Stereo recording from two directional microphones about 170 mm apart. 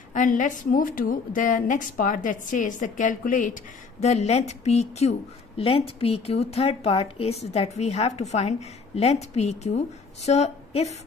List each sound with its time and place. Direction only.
0.1 s a woman's voice: 50° left (ahead or behind)